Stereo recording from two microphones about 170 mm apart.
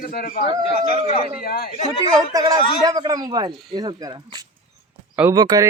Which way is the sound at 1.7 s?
35° left (ahead or behind).